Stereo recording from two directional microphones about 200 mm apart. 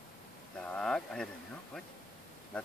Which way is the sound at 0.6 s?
5° left (ahead or behind).